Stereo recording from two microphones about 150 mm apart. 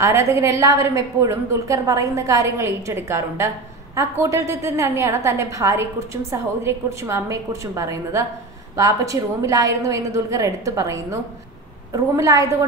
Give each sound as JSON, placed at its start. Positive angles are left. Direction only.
{"t": 0.0, "sound": "a woman's voice", "side_deg": -20}